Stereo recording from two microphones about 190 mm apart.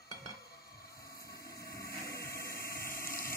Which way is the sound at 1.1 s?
55° left (ahead or behind).